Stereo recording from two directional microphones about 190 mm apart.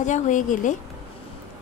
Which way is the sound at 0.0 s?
40° left (ahead or behind).